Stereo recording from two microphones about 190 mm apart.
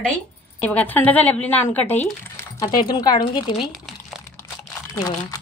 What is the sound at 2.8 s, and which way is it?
Speech, 20° left (ahead or behind).